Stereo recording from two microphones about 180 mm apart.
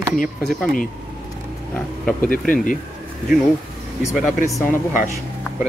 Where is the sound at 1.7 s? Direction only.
10° left (ahead or behind).